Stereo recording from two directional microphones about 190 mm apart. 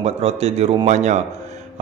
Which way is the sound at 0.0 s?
35° right (ahead or behind).